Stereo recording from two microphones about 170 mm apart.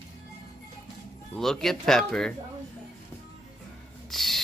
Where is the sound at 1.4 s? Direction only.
Centre (ahead or behind).